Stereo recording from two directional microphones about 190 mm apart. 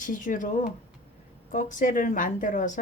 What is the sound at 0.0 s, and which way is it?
Speech, 45° left (ahead or behind).